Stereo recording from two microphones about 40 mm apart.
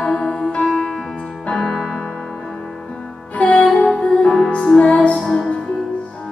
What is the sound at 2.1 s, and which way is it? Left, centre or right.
Music, centre.